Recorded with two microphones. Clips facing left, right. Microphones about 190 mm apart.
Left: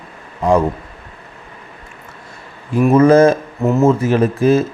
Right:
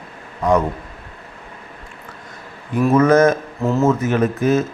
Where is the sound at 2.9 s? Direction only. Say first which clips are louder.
Left 4 dB; 30° left (ahead or behind).